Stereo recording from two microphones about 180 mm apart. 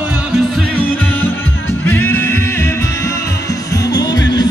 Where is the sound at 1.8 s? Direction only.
10° left (ahead or behind).